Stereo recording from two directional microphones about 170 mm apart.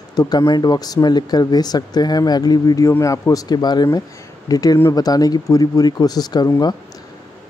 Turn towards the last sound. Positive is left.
turn(degrees=25)  # may be behind; listen again after turning